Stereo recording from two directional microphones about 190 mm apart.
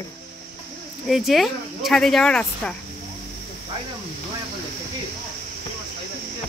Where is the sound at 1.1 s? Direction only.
Centre (ahead or behind).